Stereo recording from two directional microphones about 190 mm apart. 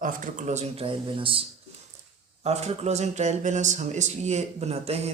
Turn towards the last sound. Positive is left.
turn(degrees=-35)  # may be behind; listen again after turning